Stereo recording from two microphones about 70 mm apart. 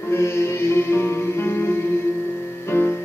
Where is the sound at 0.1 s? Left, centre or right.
Left.